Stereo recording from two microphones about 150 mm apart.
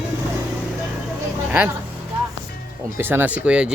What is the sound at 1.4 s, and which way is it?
Speech, 10° right (ahead or behind).